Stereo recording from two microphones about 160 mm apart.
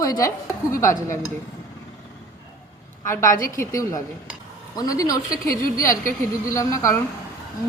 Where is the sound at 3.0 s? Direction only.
20° left (ahead or behind).